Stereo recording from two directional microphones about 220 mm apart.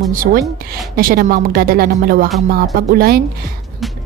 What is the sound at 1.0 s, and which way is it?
Speech, 40° right (ahead or behind).